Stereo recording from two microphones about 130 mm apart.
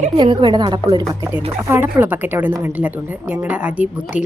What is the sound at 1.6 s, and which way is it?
A woman's voice, 15° right (ahead or behind).